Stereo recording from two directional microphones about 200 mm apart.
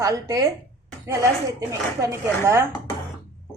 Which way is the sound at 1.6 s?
15° right (ahead or behind).